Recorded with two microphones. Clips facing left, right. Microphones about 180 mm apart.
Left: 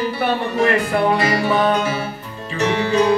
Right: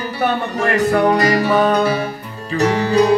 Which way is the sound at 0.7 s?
40° right (ahead or behind).